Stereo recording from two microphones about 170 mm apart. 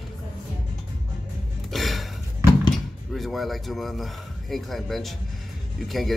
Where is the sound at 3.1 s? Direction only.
Centre (ahead or behind).